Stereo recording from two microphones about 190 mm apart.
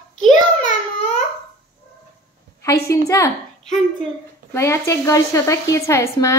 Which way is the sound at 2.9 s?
15° left (ahead or behind).